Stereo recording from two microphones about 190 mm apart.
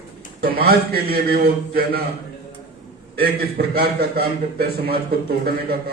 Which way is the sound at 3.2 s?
55° right (ahead or behind).